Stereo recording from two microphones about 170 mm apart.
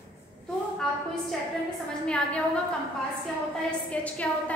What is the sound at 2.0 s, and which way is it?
Speech, 5° left (ahead or behind).